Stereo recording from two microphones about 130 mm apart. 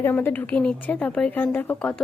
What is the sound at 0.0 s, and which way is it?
A woman's voice, 15° left (ahead or behind).